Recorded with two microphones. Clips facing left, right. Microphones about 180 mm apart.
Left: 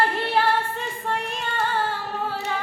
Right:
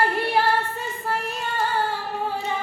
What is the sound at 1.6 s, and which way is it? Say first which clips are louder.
Singing: right 1 dB; 10° right (ahead or behind).